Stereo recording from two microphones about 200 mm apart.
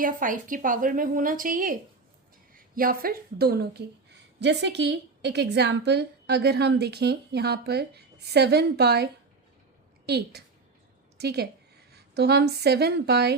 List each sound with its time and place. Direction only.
0.0 s a woman's voice: 40° right (ahead or behind)
10.1 s a woman's voice: 55° right (ahead or behind)